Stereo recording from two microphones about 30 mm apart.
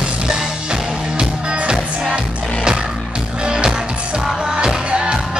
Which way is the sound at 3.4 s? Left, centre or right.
Right.